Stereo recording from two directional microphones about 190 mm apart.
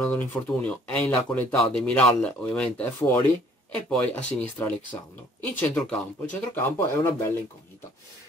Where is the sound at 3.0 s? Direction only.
15° left (ahead or behind).